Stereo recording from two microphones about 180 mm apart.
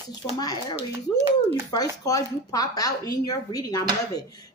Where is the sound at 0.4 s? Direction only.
20° left (ahead or behind).